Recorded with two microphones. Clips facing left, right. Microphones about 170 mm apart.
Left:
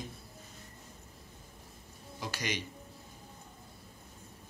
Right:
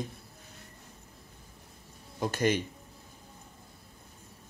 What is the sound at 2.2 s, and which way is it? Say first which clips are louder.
Speech: right 10 dB; 50° right (ahead or behind).